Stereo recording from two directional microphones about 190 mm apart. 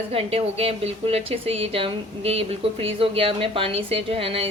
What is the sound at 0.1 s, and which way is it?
Speech, 30° right (ahead or behind).